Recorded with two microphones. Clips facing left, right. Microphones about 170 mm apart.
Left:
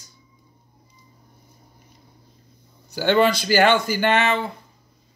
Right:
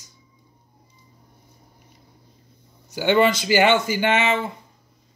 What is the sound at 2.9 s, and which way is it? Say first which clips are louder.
Speech: even; 15° right (ahead or behind).